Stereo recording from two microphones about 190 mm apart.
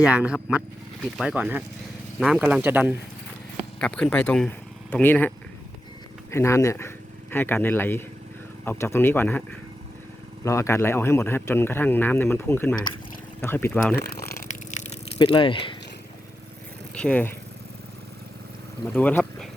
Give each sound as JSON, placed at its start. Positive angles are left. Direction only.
{"t": 0.1, "sound": "speech", "side_deg": -5}
{"t": 3.8, "sound": "speech", "side_deg": 5}
{"t": 6.3, "sound": "a man's voice", "side_deg": 15}
{"t": 14.7, "sound": "a sound", "side_deg": 40}
{"t": 15.2, "sound": "speech", "side_deg": 25}
{"t": 16.9, "sound": "speech", "side_deg": 5}
{"t": 18.9, "sound": "speech", "side_deg": 5}